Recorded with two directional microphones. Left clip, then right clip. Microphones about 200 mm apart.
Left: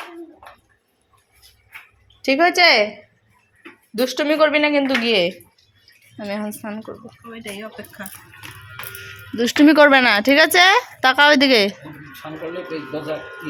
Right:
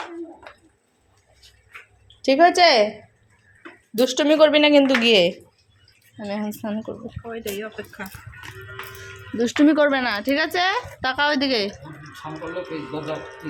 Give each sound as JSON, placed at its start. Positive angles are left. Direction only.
{"t": 2.2, "sound": "a woman's voice", "side_deg": -5}
{"t": 6.1, "sound": "a woman's voice", "side_deg": 5}
{"t": 6.6, "sound": "speech", "side_deg": -10}
{"t": 9.3, "sound": "speech", "side_deg": 5}
{"t": 9.7, "sound": "speech", "side_deg": 25}